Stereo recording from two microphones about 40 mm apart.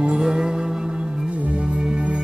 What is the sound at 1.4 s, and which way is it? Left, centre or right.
Music, right.